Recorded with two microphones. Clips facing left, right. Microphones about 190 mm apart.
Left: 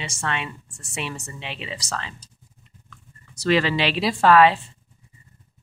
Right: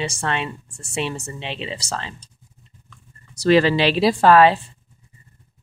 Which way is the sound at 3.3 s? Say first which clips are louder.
Right 5 dB; 35° right (ahead or behind).